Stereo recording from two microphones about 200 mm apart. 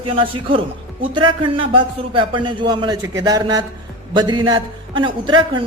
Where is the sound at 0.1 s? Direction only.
25° right (ahead or behind).